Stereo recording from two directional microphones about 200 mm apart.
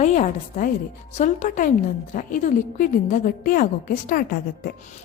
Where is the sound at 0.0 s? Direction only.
35° left (ahead or behind).